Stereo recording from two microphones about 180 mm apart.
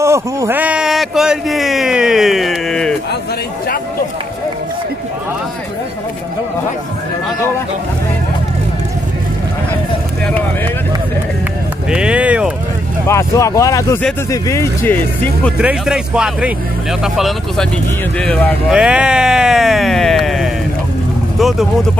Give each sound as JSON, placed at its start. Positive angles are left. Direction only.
{"t": 0.0, "sound": "speech", "side_deg": -15}
{"t": 11.9, "sound": "run", "side_deg": -5}
{"t": 13.0, "sound": "speech", "side_deg": 15}
{"t": 15.5, "sound": "speech", "side_deg": -5}